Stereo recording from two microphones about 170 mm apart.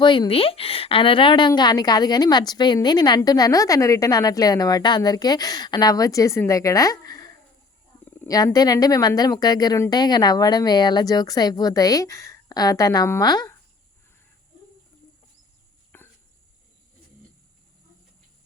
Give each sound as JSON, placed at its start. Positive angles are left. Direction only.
{"t": 0.0, "sound": "a woman's voice", "side_deg": 30}
{"t": 15.9, "sound": "cricket", "side_deg": 10}